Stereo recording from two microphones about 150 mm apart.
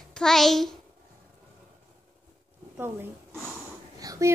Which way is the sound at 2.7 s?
15° right (ahead or behind).